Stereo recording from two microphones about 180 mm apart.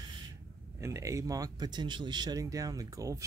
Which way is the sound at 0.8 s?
15° right (ahead or behind).